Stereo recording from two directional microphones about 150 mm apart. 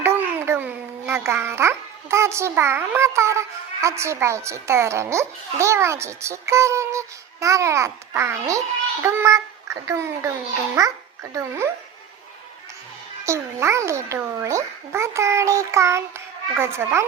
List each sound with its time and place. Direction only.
0.0 s a child's voice: 15° right (ahead or behind)
13.2 s a child's voice: 20° right (ahead or behind)